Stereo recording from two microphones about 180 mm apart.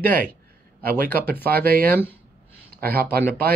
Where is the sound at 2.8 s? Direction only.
55° right (ahead or behind).